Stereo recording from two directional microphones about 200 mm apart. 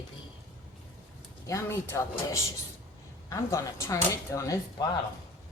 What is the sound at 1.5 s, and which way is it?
Speech, 15° left (ahead or behind).